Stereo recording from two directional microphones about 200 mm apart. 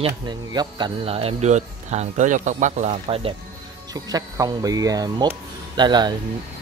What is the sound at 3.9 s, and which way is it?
Speech, 20° right (ahead or behind).